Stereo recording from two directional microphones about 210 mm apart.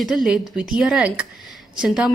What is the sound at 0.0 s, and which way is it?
A woman's voice, centre (ahead or behind).